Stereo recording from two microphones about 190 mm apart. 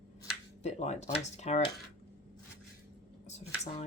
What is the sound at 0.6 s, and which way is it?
Speech, 35° left (ahead or behind).